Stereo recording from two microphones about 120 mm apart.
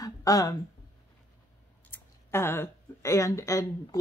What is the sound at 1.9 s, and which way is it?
Speech, 20° left (ahead or behind).